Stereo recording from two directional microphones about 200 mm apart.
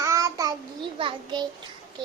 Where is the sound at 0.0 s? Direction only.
15° right (ahead or behind).